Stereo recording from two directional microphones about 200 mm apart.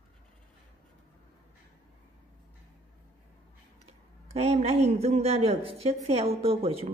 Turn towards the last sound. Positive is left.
turn(degrees=-30)  # may be behind; listen again after turning